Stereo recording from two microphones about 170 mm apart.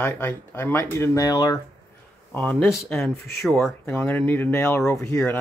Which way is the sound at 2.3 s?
5° left (ahead or behind).